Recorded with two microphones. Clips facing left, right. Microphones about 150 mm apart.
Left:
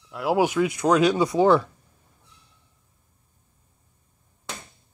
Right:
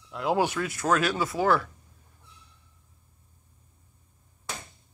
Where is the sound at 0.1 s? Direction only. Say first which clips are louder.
Left 4 dB; 5° left (ahead or behind); by 1.7 s 20° left (ahead or behind).